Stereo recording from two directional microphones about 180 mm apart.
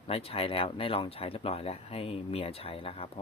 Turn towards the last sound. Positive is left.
turn(degrees=30)  # may be behind; listen again after turning